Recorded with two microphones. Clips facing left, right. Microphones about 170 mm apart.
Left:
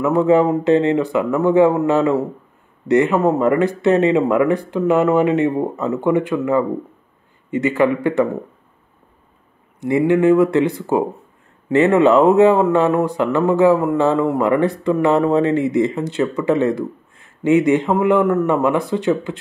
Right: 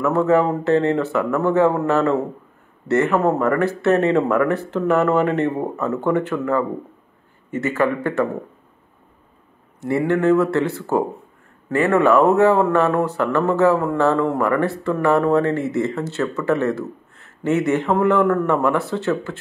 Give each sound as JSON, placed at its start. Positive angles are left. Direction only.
{"t": 0.0, "sound": "a man's voice", "side_deg": 15}
{"t": 9.8, "sound": "a man's voice", "side_deg": 15}